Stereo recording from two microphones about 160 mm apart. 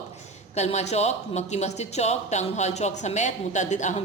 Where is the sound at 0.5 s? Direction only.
45° left (ahead or behind).